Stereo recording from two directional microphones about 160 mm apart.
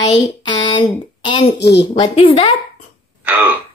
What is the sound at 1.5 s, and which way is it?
Speech, 90° left.